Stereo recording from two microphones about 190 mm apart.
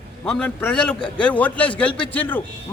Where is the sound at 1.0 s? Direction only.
25° left (ahead or behind).